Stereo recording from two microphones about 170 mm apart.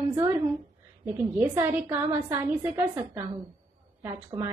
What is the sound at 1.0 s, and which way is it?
A woman's voice, 10° right (ahead or behind).